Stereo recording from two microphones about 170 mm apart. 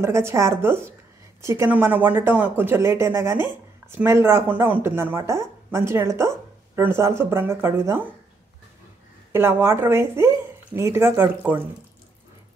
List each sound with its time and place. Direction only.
0.0 s speech: 15° right (ahead or behind)
9.3 s speech: 15° right (ahead or behind)